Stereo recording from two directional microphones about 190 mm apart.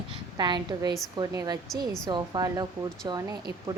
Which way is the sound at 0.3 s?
25° right (ahead or behind).